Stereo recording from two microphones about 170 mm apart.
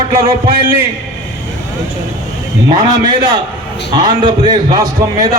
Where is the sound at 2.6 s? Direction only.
25° right (ahead or behind).